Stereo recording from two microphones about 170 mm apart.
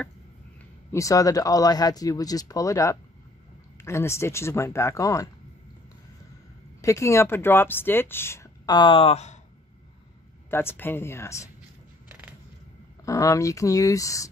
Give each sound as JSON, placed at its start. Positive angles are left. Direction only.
{"t": 0.9, "sound": "speech", "side_deg": 20}
{"t": 6.8, "sound": "speech", "side_deg": 15}
{"t": 10.5, "sound": "speech", "side_deg": 15}
{"t": 13.0, "sound": "speech", "side_deg": 20}